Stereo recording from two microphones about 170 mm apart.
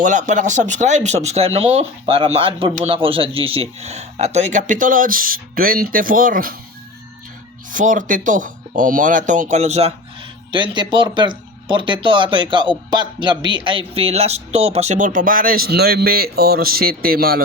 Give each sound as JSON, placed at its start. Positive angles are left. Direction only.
{"t": 0.0, "sound": "speech", "side_deg": -45}
{"t": 7.7, "sound": "speech", "side_deg": -50}
{"t": 10.5, "sound": "speech", "side_deg": -30}